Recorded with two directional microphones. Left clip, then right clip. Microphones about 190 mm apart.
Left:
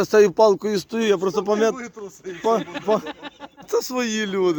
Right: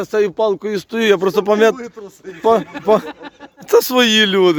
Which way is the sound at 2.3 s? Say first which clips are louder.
Right 7 dB; 15° right (ahead or behind).